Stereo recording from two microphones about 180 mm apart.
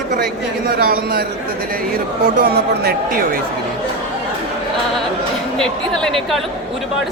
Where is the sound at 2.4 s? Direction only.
60° right (ahead or behind).